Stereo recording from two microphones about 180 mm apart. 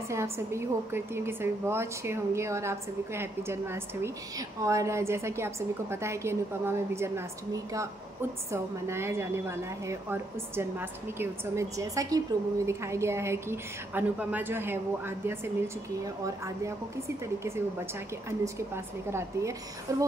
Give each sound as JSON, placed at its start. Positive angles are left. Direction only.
{"t": 0.1, "sound": "a woman's voice", "side_deg": -15}
{"t": 17.2, "sound": "a woman's voice", "side_deg": -15}
{"t": 19.0, "sound": "a woman's voice", "side_deg": -15}